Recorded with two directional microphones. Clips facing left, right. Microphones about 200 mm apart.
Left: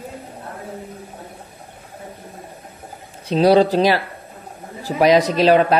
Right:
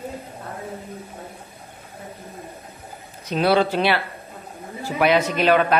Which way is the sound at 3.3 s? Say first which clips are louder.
Left 5 dB; 35° left (ahead or behind).